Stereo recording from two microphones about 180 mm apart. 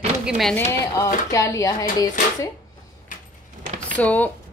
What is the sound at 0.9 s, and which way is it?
Speech, 20° left (ahead or behind).